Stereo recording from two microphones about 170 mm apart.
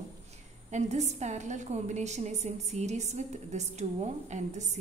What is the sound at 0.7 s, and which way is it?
A woman's voice, 40° right (ahead or behind).